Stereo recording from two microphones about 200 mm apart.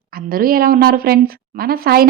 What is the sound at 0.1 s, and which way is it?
A woman's voice, 45° right (ahead or behind).